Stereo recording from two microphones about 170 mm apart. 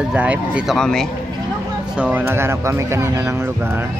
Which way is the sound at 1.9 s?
10° right (ahead or behind).